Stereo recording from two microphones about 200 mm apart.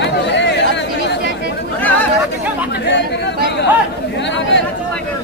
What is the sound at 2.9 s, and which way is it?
Chatter, 60° left (ahead or behind).